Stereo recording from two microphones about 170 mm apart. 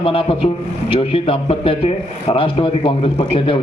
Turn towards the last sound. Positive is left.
turn(degrees=30)  # may be behind; listen again after turning